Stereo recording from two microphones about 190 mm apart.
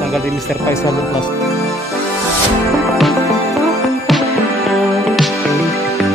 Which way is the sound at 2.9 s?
Centre (ahead or behind).